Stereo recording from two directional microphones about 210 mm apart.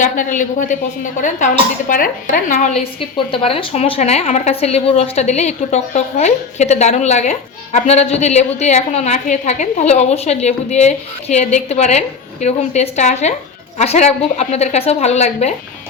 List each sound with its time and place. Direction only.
0.0 s a woman's voice: 40° left (ahead or behind)
3.3 s a woman's voice: 25° left (ahead or behind)